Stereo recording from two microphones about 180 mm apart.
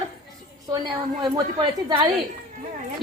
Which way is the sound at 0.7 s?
25° right (ahead or behind).